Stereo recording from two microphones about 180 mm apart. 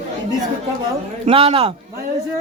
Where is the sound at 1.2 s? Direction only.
35° right (ahead or behind).